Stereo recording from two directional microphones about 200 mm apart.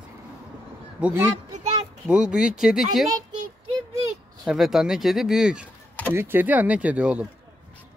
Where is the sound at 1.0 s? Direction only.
10° right (ahead or behind).